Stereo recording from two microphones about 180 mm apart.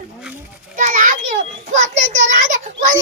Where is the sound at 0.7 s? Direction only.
45° right (ahead or behind).